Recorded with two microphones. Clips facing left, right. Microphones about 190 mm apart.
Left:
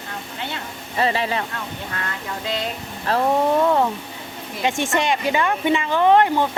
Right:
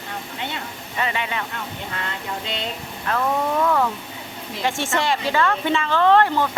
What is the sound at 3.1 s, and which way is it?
Speech, 30° left (ahead or behind).